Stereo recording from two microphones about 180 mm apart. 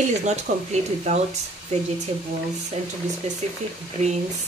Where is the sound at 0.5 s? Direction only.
40° right (ahead or behind).